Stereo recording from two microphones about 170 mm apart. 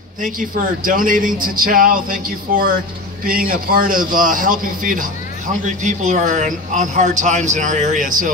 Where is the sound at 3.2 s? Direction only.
55° right (ahead or behind).